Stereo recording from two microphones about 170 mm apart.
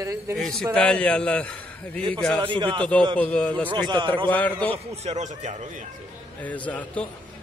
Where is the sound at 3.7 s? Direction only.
30° right (ahead or behind).